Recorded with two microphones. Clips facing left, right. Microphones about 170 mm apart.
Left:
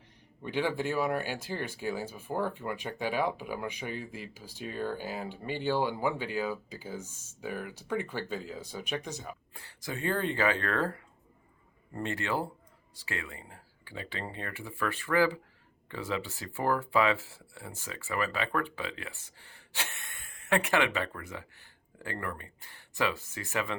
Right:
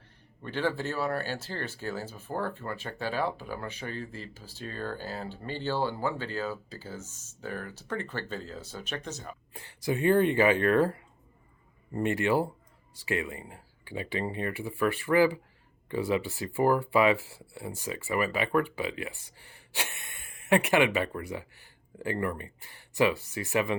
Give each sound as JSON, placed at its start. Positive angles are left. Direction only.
{"t": 0.4, "sound": "speech", "side_deg": 15}
{"t": 9.6, "sound": "speech", "side_deg": -20}
{"t": 11.9, "sound": "speech", "side_deg": -15}